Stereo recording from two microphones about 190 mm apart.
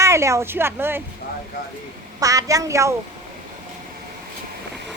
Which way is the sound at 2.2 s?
15° right (ahead or behind).